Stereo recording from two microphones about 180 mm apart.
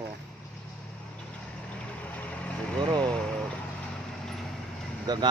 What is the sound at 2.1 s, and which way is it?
Vehicle, 10° left (ahead or behind).